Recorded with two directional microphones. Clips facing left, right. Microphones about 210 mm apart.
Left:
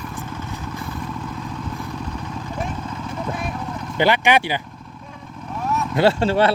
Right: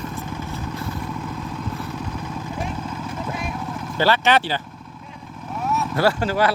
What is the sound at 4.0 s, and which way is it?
Speech, 15° left (ahead or behind).